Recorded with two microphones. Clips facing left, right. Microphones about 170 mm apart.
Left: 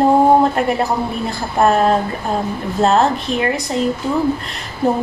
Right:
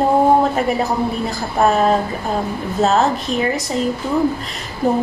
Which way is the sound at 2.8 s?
Centre (ahead or behind).